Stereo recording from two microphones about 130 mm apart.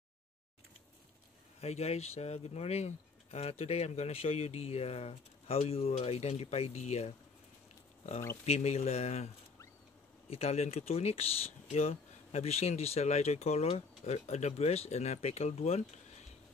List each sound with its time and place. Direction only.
1.6 s speech: 55° left (ahead or behind)
8.5 s speech: 55° left (ahead or behind)
10.3 s speech: 50° left (ahead or behind)